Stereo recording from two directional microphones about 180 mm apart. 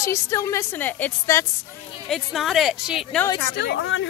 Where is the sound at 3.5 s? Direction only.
65° left (ahead or behind); by 4.1 s 90° left.